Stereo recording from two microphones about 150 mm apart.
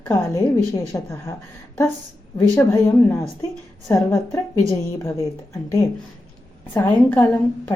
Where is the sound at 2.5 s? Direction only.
15° left (ahead or behind).